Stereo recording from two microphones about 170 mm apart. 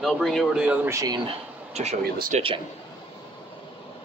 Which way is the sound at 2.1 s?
55° right (ahead or behind).